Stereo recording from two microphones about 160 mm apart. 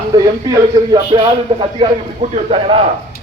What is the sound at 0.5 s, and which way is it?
A man's voice, 20° right (ahead or behind).